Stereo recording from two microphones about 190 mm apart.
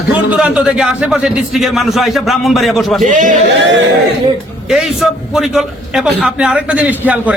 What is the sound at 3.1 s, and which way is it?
Speech, 45° right (ahead or behind).